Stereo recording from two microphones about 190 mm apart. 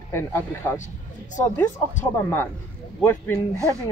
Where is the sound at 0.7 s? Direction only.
40° left (ahead or behind).